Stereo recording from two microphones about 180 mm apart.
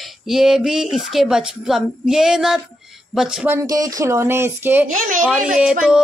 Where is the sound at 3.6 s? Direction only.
20° right (ahead or behind).